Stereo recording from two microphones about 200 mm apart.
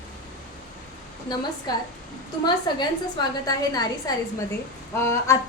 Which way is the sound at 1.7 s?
20° left (ahead or behind).